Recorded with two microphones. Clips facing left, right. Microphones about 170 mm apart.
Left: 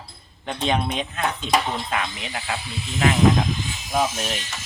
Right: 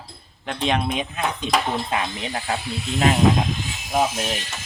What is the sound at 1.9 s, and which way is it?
Speech, 30° right (ahead or behind).